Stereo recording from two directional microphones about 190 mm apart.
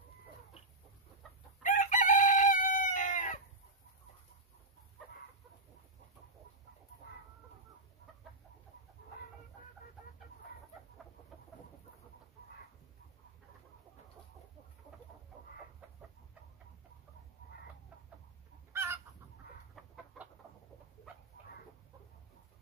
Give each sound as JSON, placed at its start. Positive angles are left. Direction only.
{"t": 1.6, "sound": "chicken", "side_deg": 40}
{"t": 18.7, "sound": "chicken", "side_deg": -10}
{"t": 19.8, "sound": "chicken", "side_deg": 0}